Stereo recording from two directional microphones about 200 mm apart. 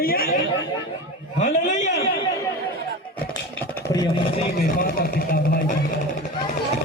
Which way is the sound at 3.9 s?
20° left (ahead or behind).